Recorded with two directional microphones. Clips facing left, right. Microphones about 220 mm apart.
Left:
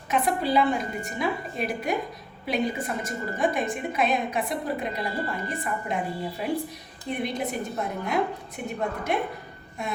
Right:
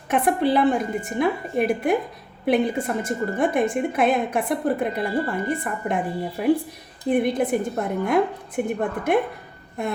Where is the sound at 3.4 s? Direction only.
55° right (ahead or behind).